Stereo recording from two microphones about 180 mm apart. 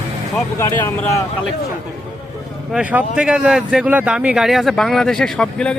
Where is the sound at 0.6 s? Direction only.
15° left (ahead or behind).